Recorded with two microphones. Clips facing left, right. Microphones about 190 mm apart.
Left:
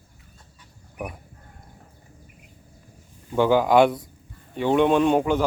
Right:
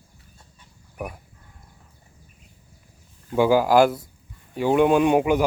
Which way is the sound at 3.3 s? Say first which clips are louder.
Right 1 dB; 5° right (ahead or behind).